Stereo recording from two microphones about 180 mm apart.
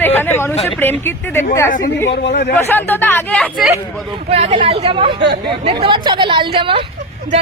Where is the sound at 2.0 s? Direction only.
75° left (ahead or behind).